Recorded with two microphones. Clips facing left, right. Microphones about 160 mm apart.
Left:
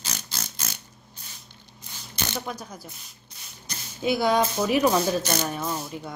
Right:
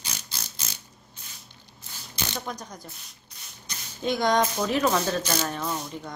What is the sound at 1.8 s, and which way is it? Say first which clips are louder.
Ratchet: left 1 dB; 20° left (ahead or behind).